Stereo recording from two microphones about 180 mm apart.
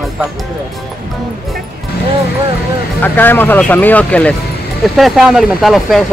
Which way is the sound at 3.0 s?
10° left (ahead or behind).